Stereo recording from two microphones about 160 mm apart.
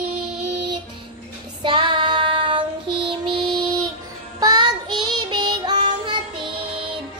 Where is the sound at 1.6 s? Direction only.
30° right (ahead or behind).